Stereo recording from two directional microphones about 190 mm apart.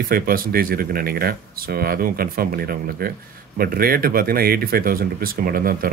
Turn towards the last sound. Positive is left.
turn(degrees=-50)  # may be behind; listen again after turning